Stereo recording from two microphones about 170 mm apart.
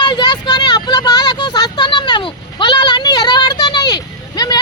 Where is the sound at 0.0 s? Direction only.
25° left (ahead or behind).